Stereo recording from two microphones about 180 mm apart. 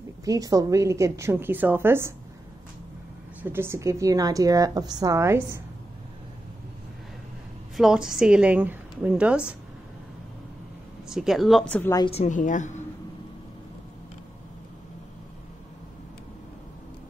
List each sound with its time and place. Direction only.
0.2 s a woman's voice: 20° right (ahead or behind)
3.5 s a woman's voice: 15° right (ahead or behind)
7.7 s a woman's voice: 5° right (ahead or behind)
11.1 s a woman's voice: centre (ahead or behind)
12.1 s a woman's voice: 40° left (ahead or behind)